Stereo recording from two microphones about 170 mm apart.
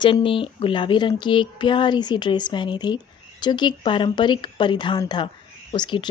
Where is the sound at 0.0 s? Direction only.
30° left (ahead or behind).